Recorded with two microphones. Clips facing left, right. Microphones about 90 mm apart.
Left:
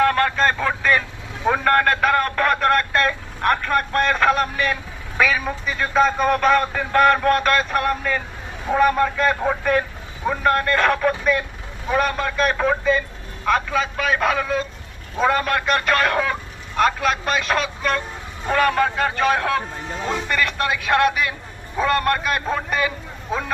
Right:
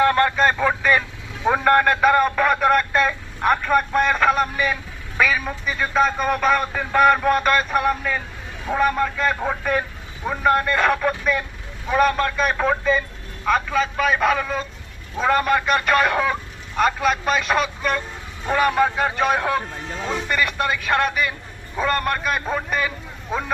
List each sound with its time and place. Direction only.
0.0 s vehicle: 15° right (ahead or behind)
1.5 s a sound: 10° right (ahead or behind)
8.6 s a man's voice: centre (ahead or behind)